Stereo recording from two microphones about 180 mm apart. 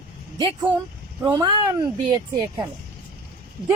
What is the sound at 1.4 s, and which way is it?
Speech, 20° right (ahead or behind).